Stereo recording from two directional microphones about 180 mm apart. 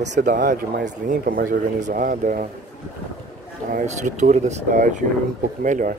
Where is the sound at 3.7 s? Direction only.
45° right (ahead or behind).